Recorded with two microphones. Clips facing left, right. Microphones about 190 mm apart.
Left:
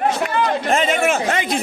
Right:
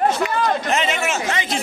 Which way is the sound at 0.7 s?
50° left (ahead or behind).